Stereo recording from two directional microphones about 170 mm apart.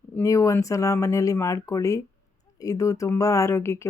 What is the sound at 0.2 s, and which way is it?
Speech, 20° left (ahead or behind).